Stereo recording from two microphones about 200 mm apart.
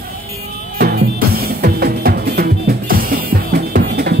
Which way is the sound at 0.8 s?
50° right (ahead or behind).